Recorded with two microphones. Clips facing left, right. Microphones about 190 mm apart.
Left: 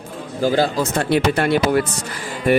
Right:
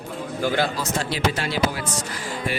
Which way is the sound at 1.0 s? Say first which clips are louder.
Left 9 dB; 60° left (ahead or behind).